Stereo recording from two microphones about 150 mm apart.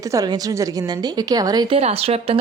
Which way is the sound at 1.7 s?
40° right (ahead or behind).